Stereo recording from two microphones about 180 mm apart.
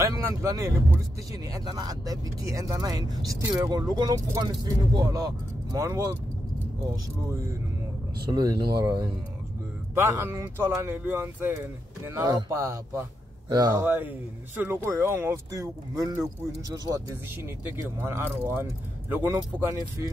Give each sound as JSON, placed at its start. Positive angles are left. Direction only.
{"t": 0.0, "sound": "speech", "side_deg": -20}
{"t": 8.3, "sound": "speech", "side_deg": -25}
{"t": 9.9, "sound": "speech", "side_deg": -15}
{"t": 13.8, "sound": "speech", "side_deg": -10}